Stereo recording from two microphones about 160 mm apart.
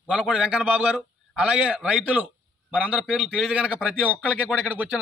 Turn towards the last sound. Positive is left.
turn(degrees=-5)  # may be behind; listen again after turning